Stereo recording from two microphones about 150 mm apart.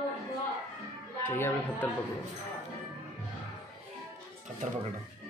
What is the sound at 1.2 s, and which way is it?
Speech, 15° left (ahead or behind).